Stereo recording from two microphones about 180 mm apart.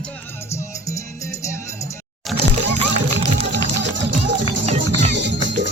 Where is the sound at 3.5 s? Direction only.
80° right.